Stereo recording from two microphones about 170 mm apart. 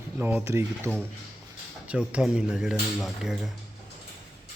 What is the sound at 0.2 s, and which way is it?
Speech, 10° right (ahead or behind).